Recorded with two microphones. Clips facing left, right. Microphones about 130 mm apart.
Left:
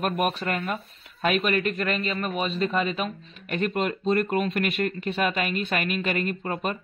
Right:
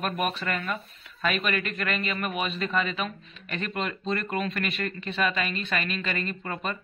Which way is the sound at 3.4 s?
45° left (ahead or behind).